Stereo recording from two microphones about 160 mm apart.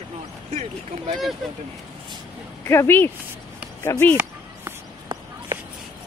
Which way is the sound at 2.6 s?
15° left (ahead or behind).